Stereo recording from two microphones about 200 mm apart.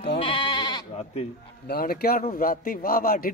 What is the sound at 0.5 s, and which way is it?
Sheep, 20° left (ahead or behind).